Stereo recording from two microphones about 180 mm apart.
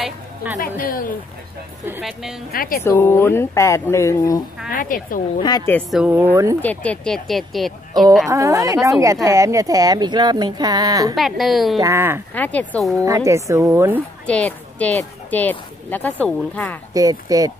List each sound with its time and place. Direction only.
0.0 s a sound: 10° right (ahead or behind)
0.6 s a woman's voice: 50° left (ahead or behind)
1.9 s speech: 5° right (ahead or behind)
2.5 s a woman's voice: 55° left (ahead or behind)
2.8 s speech: 15° left (ahead or behind)
4.6 s a woman's voice: 50° left (ahead or behind)
5.7 s speech: 10° left (ahead or behind)
8.3 s speech: 15° right (ahead or behind)
11.1 s speech: centre (ahead or behind)
11.8 s speech: 15° right (ahead or behind)
12.4 s speech: 10° left (ahead or behind)
13.0 s speech: 15° right (ahead or behind)
14.2 s speech: 5° left (ahead or behind)
16.9 s speech: 20° right (ahead or behind)